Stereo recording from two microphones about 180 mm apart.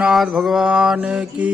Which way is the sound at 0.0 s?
5° right (ahead or behind).